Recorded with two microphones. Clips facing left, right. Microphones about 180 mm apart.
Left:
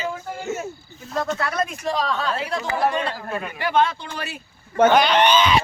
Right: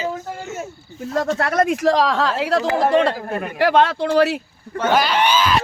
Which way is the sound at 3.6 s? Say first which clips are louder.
Right 5 dB; 80° right.